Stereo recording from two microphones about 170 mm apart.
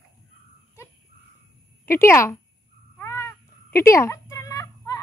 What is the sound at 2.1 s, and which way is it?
Speech, 15° left (ahead or behind).